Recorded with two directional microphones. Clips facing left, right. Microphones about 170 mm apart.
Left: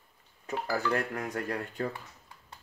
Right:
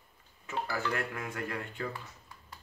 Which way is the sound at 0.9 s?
40° left (ahead or behind).